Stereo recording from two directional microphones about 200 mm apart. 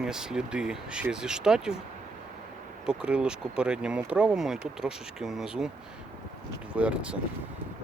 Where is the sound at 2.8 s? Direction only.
5° right (ahead or behind).